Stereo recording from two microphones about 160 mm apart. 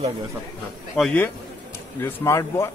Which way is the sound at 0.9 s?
Centre (ahead or behind).